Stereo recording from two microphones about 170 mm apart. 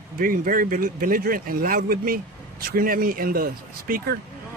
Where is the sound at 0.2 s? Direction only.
55° right (ahead or behind).